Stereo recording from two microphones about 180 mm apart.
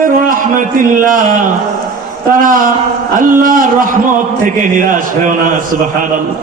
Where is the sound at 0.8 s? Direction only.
50° right (ahead or behind).